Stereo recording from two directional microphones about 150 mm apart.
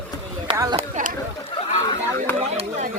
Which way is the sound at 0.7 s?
60° right (ahead or behind).